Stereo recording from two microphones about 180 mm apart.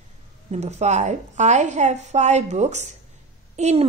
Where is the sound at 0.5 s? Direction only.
40° right (ahead or behind).